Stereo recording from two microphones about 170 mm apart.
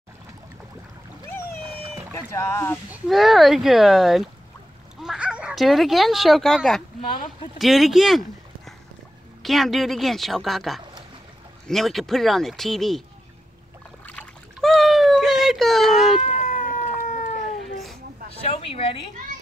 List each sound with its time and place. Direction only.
2.1 s speech: 15° left (ahead or behind)
2.9 s speech: centre (ahead or behind)
9.4 s speech: centre (ahead or behind)
14.0 s a sound: 5° left (ahead or behind)
16.2 s cat: 45° left (ahead or behind)
18.4 s speech: 35° left (ahead or behind)